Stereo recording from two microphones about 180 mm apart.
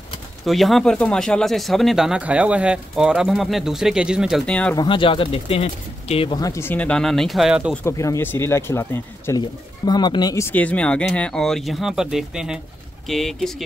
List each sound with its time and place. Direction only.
0.5 s speech: centre (ahead or behind)
4.7 s speech: 25° left (ahead or behind); by 7.7 s 5° right (ahead or behind)
7.7 s speech: 15° left (ahead or behind)